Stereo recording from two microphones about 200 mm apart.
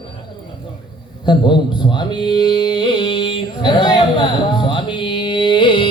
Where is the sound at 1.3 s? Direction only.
20° left (ahead or behind).